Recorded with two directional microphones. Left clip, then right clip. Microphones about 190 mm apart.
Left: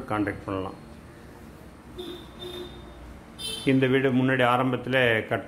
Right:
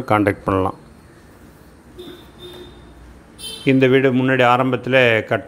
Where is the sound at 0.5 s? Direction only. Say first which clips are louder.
Right 13 dB; 35° right (ahead or behind).